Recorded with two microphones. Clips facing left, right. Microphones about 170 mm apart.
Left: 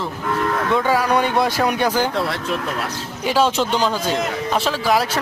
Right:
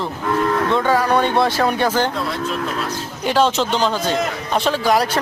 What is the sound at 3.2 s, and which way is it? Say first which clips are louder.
A man's voice: right 1 dB; 5° left (ahead or behind).